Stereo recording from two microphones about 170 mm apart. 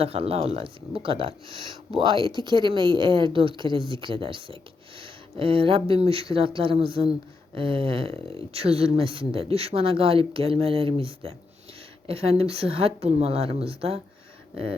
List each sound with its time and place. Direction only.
0.0 s speech: 35° right (ahead or behind)